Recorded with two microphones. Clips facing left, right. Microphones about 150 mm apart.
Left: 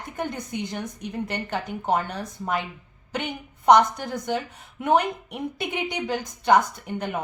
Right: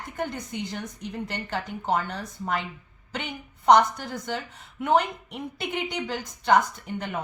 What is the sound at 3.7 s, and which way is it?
A woman's voice, 15° left (ahead or behind).